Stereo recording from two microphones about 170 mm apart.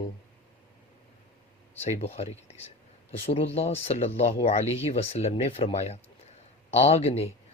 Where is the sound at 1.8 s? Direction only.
35° left (ahead or behind).